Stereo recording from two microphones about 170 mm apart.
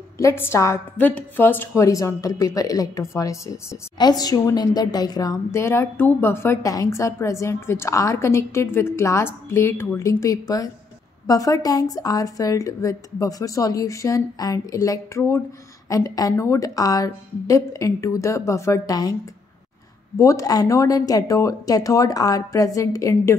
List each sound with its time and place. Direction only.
0.2 s a woman's voice: 15° left (ahead or behind)
20.2 s a woman's voice: 20° left (ahead or behind)